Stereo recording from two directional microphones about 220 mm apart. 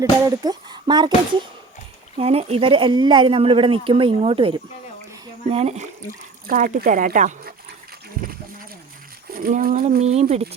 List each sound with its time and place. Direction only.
0.0 s speech: 15° right (ahead or behind)
2.1 s speech: 25° right (ahead or behind)
6.5 s speech: 40° right (ahead or behind)
9.4 s speech: 40° right (ahead or behind)